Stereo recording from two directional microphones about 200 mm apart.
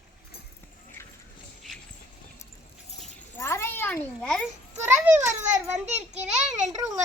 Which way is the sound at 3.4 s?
15° left (ahead or behind).